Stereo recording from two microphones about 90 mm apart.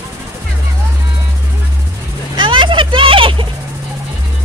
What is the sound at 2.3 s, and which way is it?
Vehicle, 60° right (ahead or behind).